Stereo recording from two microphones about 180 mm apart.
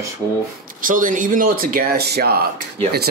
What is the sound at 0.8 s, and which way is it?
Speech, 50° right (ahead or behind).